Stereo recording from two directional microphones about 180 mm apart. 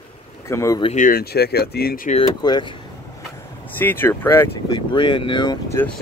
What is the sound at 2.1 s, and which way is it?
Speech, 25° left (ahead or behind).